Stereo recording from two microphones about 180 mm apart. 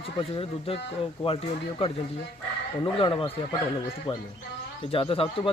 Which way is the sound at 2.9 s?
30° left (ahead or behind).